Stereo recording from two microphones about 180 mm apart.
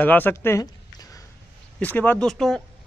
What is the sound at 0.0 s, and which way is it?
Speech, 10° left (ahead or behind).